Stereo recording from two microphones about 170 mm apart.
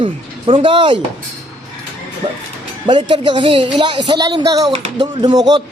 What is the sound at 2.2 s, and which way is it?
Music, 35° right (ahead or behind).